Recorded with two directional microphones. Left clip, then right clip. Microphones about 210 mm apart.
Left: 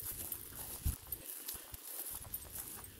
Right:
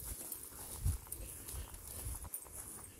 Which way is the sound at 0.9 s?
50° left (ahead or behind).